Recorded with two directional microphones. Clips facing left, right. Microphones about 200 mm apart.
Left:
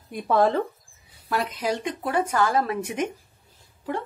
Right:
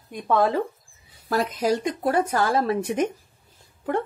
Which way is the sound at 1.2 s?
40° right (ahead or behind).